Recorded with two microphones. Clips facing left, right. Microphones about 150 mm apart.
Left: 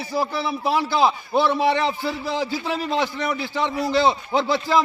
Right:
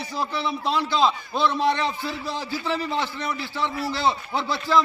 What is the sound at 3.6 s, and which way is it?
A man's voice, 20° left (ahead or behind).